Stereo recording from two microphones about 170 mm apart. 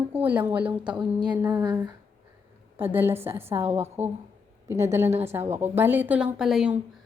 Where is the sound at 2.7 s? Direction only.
10° right (ahead or behind).